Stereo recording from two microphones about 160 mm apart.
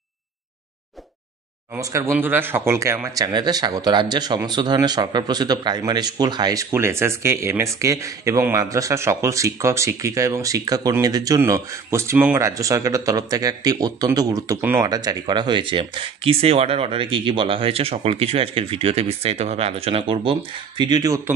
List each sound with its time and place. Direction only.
1.8 s speech: 20° right (ahead or behind)